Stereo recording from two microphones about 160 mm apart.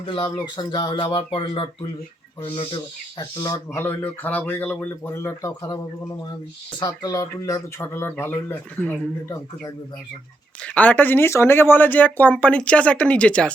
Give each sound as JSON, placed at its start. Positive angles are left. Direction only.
{"t": 0.1, "sound": "speech", "side_deg": 25}
{"t": 3.4, "sound": "speech", "side_deg": 20}